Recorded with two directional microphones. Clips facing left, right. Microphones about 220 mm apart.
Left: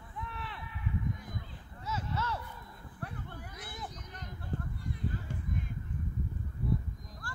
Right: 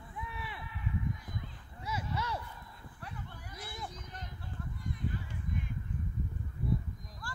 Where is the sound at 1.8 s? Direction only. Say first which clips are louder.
Left 1 dB; 10° right (ahead or behind).